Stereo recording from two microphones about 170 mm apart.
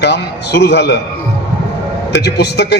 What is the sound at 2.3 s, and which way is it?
Speech, 80° left.